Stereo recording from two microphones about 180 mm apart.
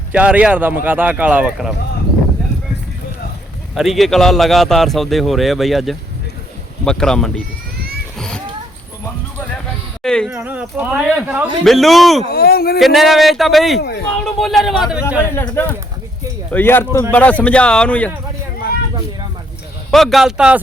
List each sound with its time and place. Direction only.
0.1 s speech: 5° right (ahead or behind)
3.8 s a man's voice: centre (ahead or behind)
10.0 s a man's voice: 5° left (ahead or behind)
10.3 s a man's voice: 5° right (ahead or behind)
12.3 s speech: 60° left (ahead or behind)
12.8 s a man's voice: centre (ahead or behind)
15.2 s speech: 10° left (ahead or behind)
19.9 s a man's voice: centre (ahead or behind)